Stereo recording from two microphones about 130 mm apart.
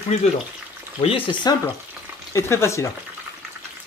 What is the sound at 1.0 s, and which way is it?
Speech, 45° left (ahead or behind).